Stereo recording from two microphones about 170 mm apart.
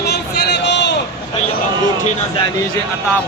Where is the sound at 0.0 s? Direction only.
75° left (ahead or behind); by 0.9 s 90° left.